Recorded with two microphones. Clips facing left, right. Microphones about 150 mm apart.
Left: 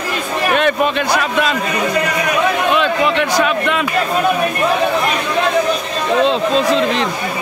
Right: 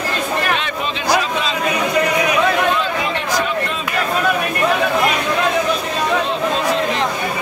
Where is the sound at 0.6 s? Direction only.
55° left (ahead or behind).